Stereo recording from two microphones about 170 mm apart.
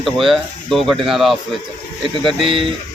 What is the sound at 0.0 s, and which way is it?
A man's voice, centre (ahead or behind).